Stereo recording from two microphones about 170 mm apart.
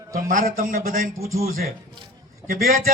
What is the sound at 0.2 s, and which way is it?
Speech, 50° right (ahead or behind).